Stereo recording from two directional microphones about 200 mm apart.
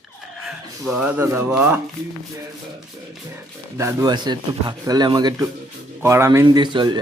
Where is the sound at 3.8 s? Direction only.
15° right (ahead or behind).